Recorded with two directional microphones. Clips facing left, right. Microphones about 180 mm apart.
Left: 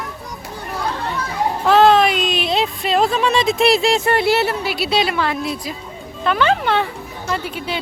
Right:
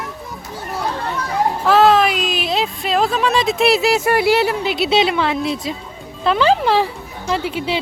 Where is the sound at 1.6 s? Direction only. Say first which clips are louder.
Left 1 dB; centre (ahead or behind); by 5.7 s 25° right (ahead or behind).